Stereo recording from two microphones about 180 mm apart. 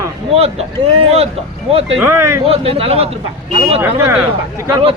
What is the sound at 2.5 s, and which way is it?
Speech, 30° right (ahead or behind).